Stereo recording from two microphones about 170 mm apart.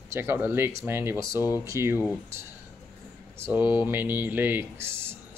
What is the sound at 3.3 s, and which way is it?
Speech, 15° right (ahead or behind).